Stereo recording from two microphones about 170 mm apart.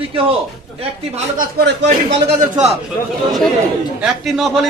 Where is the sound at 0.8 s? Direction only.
40° right (ahead or behind).